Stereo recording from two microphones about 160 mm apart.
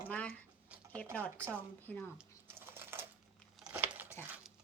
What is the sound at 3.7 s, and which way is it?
Crumpling, 10° right (ahead or behind).